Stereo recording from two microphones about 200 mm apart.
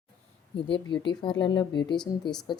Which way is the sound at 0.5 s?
25° left (ahead or behind).